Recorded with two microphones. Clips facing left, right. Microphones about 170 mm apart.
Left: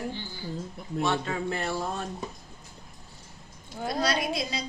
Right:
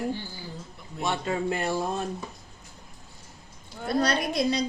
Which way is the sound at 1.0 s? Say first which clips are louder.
Right 1 dB; 15° right (ahead or behind).